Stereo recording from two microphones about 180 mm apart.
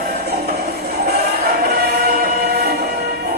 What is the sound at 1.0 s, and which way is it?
Choir, 60° right (ahead or behind).